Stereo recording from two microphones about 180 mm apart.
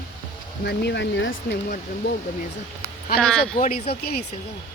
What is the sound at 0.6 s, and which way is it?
Speech, 70° left (ahead or behind).